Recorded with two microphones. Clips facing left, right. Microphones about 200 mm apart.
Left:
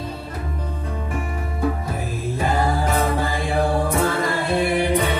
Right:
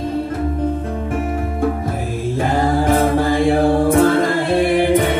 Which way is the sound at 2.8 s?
50° right (ahead or behind).